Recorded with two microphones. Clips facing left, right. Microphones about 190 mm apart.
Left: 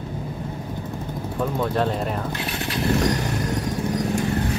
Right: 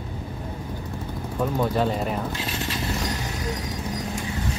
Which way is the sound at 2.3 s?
65° left (ahead or behind).